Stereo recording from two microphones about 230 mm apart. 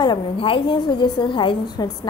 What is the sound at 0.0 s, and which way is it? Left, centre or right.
A woman's voice, left.